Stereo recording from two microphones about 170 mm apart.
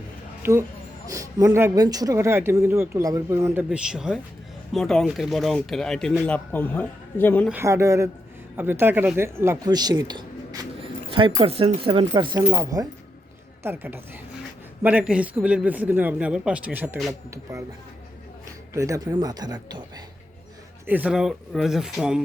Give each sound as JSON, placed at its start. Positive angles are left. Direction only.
{"t": 0.4, "sound": "speech", "side_deg": -15}
{"t": 7.5, "sound": "speech", "side_deg": -15}
{"t": 18.7, "sound": "speech", "side_deg": -20}
{"t": 20.8, "sound": "speech", "side_deg": -10}